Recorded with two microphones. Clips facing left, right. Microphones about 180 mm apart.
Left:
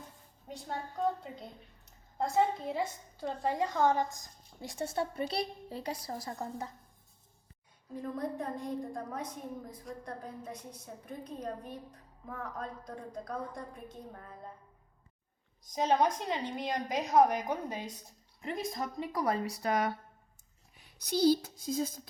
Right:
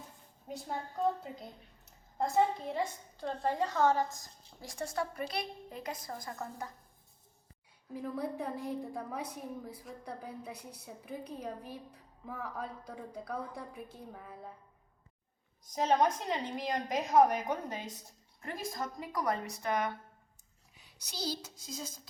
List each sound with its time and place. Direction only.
0.4 s a woman's voice: 5° right (ahead or behind); by 4.9 s 20° left (ahead or behind)
5.3 s speech: 30° left (ahead or behind)
7.9 s a woman's voice: 5° right (ahead or behind)
15.8 s a woman's voice: centre (ahead or behind)
17.5 s a woman's voice: 10° left (ahead or behind)
19.1 s speech: 30° left (ahead or behind)
20.7 s speech: 55° left (ahead or behind)